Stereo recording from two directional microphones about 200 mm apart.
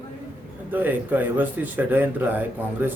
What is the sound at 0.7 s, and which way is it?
Speech, 10° right (ahead or behind).